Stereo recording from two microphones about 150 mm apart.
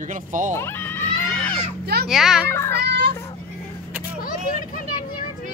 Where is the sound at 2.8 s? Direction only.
90° right.